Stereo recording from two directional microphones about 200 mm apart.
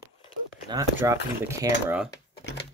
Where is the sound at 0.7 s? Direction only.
15° right (ahead or behind).